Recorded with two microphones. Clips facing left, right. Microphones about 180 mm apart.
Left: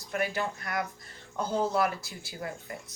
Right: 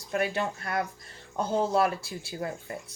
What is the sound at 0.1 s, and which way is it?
Speech, 25° right (ahead or behind).